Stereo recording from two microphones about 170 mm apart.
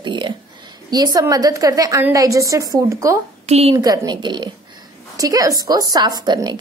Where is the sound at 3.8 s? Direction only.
25° right (ahead or behind).